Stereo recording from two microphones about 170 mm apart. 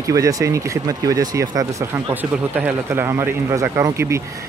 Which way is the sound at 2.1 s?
10° right (ahead or behind).